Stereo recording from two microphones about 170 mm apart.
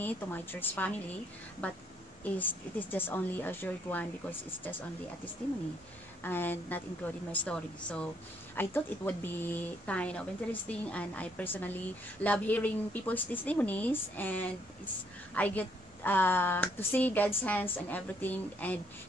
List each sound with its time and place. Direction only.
0.0 s a woman's voice: 10° left (ahead or behind)
6.2 s a woman's voice: 10° left (ahead or behind)